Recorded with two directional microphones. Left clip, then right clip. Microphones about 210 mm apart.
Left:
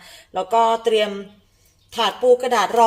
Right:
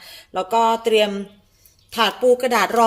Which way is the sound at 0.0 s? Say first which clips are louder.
Even; 10° right (ahead or behind).